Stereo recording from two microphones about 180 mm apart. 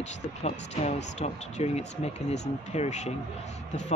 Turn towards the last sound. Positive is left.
turn(degrees=40)  # may be behind; listen again after turning